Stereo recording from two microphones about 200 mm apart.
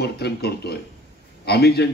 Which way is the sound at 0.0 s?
55° left (ahead or behind).